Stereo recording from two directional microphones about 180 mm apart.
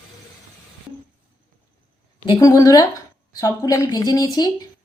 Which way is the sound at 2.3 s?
20° left (ahead or behind).